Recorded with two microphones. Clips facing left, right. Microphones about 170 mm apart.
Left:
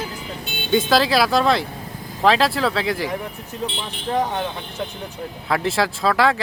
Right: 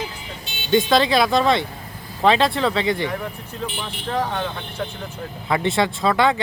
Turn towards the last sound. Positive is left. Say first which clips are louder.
# even
turn(degrees=0)  # may be behind; listen again after turning